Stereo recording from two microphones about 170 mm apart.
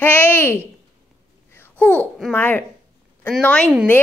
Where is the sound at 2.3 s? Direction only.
10° left (ahead or behind).